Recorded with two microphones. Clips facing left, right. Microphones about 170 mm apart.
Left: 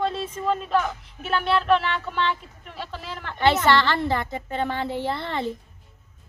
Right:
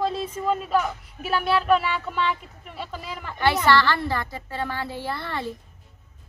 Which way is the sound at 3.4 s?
20° left (ahead or behind).